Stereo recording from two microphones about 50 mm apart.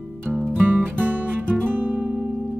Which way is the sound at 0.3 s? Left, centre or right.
Centre.